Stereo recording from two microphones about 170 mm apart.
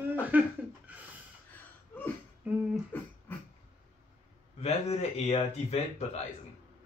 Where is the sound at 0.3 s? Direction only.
10° right (ahead or behind).